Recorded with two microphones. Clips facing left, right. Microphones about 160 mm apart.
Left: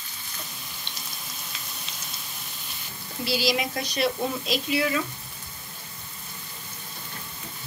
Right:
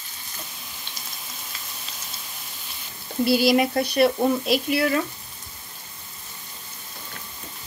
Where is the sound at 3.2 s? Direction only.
55° right (ahead or behind).